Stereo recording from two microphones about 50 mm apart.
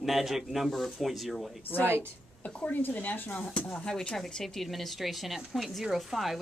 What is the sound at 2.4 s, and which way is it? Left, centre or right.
Speech, left.